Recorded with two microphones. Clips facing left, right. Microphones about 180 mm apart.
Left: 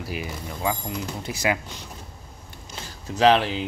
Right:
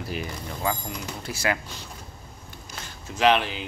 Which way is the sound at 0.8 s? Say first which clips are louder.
Left 3 dB; 20° left (ahead or behind).